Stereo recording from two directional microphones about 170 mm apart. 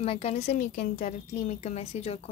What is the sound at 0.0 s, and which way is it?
A woman's voice, 35° left (ahead or behind).